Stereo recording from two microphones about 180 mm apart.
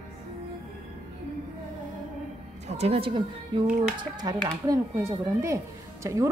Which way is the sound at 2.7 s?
35° right (ahead or behind).